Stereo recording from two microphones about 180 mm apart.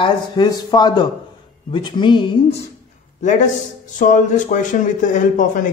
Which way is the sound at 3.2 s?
45° left (ahead or behind).